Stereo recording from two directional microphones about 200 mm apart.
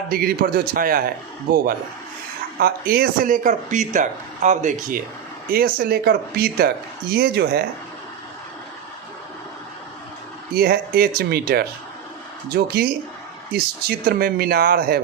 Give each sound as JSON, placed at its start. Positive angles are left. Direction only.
{"t": 0.1, "sound": "speech", "side_deg": -50}
{"t": 2.6, "sound": "speech", "side_deg": -50}
{"t": 10.5, "sound": "speech", "side_deg": -50}